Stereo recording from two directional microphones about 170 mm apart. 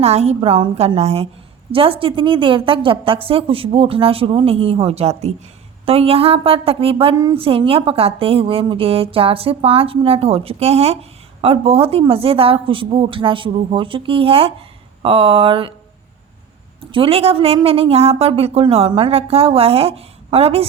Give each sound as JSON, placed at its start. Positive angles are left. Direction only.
{"t": 0.0, "sound": "speech", "side_deg": -40}
{"t": 16.9, "sound": "speech", "side_deg": -35}